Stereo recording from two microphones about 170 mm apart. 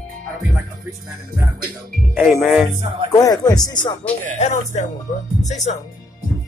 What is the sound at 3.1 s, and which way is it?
Speech, 20° left (ahead or behind).